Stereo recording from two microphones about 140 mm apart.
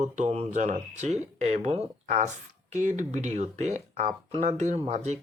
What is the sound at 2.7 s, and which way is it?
Speech, 60° right (ahead or behind).